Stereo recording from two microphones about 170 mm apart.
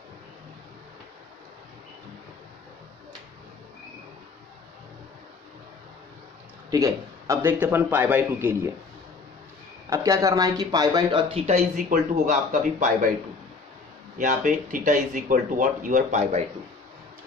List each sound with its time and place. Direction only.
6.7 s a man's voice: 20° right (ahead or behind)
9.8 s speech: 20° right (ahead or behind); by 12.9 s 50° right (ahead or behind)
14.1 s speech: 50° right (ahead or behind)